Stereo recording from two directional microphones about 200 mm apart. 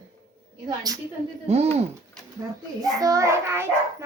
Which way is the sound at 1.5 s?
30° right (ahead or behind).